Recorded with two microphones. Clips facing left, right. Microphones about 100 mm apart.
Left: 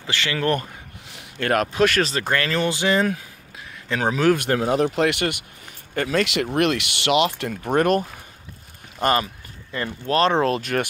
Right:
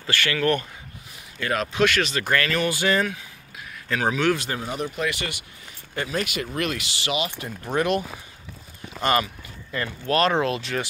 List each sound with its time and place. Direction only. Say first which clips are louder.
0.0 s speech: even; 20° left (ahead or behind)
1.1 s a sound: left 5 dB; 60° left (ahead or behind)
1.7 s speech: left 2 dB; 40° left (ahead or behind)
4.4 s speech: left 9 dB; 70° left (ahead or behind)
6.0 s speech: left 7 dB; 85° left; by 8.0 s 50° left (ahead or behind)
9.8 s speech: left 2 dB; 30° left (ahead or behind); by 10.9 s 50° left (ahead or behind)